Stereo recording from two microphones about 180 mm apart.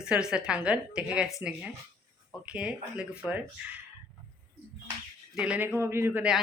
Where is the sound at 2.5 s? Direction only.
5° right (ahead or behind).